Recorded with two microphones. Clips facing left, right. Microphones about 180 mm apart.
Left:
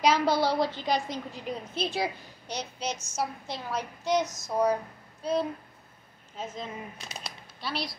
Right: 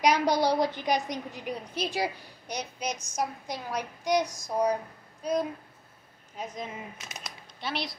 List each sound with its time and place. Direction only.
0.0 s a woman's voice: 15° right (ahead or behind)
7.1 s speech: 30° left (ahead or behind)
7.6 s speech: 20° right (ahead or behind)